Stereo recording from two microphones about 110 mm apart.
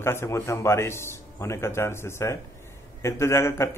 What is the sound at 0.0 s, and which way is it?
Speech, 25° left (ahead or behind).